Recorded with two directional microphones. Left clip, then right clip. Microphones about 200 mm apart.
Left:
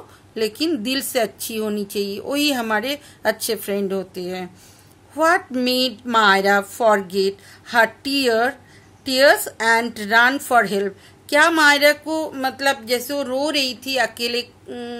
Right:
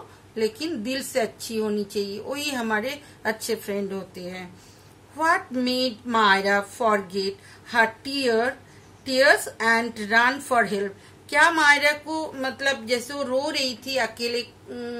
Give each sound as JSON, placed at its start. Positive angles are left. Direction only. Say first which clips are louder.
{"t": 0.4, "sound": "a woman's voice", "louder": "left 5 dB", "side_deg": 55}